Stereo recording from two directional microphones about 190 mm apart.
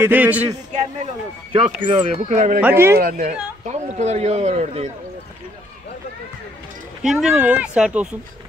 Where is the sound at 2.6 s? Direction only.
15° right (ahead or behind).